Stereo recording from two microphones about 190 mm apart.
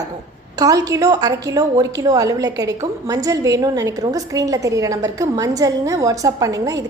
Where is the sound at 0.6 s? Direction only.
20° right (ahead or behind).